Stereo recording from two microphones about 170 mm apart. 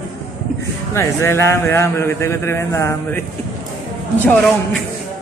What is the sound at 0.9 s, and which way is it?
Speech, 15° left (ahead or behind).